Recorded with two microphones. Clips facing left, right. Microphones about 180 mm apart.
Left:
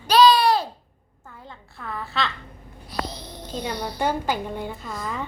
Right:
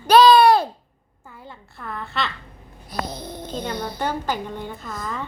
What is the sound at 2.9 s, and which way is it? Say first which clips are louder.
Speech: right 2 dB; 50° right (ahead or behind).